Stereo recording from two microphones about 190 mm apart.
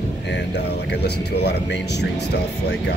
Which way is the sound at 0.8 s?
60° left (ahead or behind).